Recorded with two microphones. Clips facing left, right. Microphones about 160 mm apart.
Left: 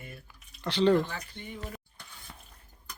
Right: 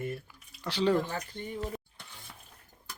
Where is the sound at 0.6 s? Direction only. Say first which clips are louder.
Left 3 dB; 5° right (ahead or behind).